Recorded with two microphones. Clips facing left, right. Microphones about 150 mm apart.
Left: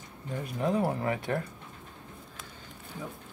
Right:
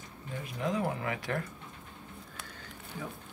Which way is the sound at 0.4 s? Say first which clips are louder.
Left 4 dB; 40° left (ahead or behind).